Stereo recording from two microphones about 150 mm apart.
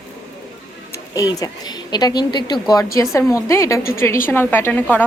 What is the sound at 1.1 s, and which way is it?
A woman's voice, 25° left (ahead or behind).